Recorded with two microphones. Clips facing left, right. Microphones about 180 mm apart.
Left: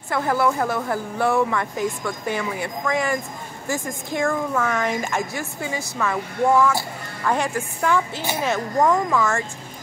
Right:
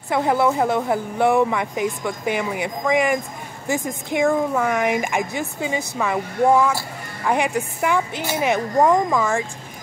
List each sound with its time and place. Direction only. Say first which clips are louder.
0.1 s a woman's voice: right 2 dB; 20° right (ahead or behind)